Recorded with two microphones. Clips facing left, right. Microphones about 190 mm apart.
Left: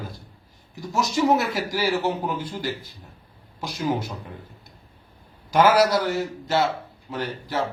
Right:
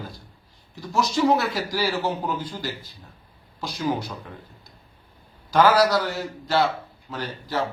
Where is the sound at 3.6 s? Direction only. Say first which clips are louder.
Even; 25° left (ahead or behind).